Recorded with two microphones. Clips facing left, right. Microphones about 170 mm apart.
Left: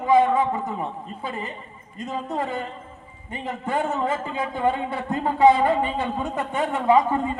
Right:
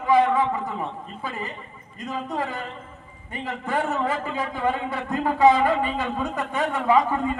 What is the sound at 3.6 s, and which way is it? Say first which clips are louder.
A man's voice: left 1 dB; 25° left (ahead or behind).